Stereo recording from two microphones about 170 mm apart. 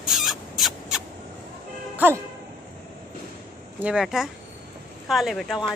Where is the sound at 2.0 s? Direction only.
10° right (ahead or behind).